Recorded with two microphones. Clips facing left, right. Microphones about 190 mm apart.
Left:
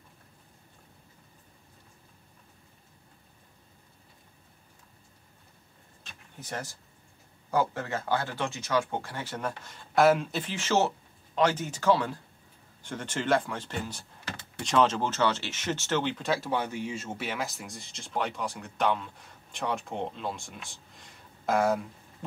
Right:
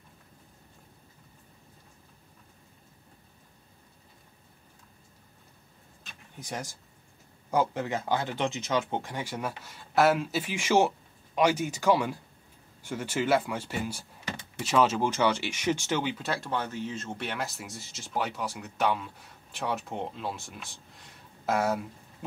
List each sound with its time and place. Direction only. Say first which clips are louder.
6.4 s speech: even; 15° right (ahead or behind)